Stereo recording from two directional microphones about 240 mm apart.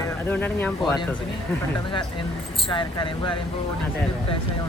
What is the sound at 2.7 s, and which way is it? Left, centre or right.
Speech, centre.